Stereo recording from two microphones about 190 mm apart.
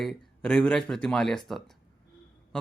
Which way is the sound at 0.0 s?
Centre (ahead or behind).